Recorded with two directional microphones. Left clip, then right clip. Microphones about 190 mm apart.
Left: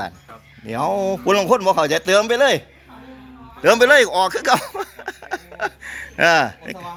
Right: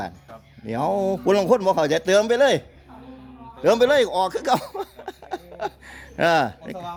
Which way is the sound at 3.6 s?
5° right (ahead or behind).